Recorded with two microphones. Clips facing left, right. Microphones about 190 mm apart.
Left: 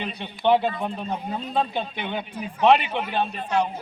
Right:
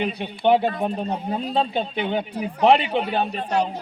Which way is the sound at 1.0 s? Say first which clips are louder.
Right 3 dB; 35° right (ahead or behind).